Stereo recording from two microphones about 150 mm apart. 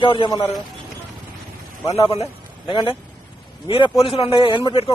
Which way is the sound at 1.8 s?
40° left (ahead or behind).